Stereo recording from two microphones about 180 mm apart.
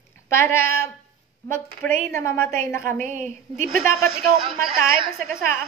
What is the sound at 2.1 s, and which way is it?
Speech, 15° left (ahead or behind).